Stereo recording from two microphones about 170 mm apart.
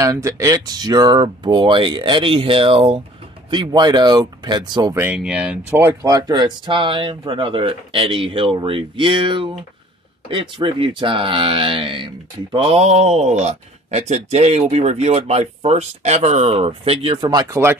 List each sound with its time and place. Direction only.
0.0 s speech: 20° right (ahead or behind)
5.1 s speech: 5° right (ahead or behind)